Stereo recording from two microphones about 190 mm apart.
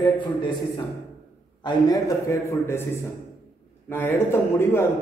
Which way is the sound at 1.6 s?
20° left (ahead or behind).